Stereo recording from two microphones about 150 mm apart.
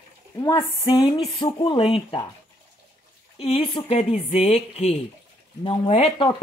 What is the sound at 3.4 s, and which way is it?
Speech, 35° left (ahead or behind).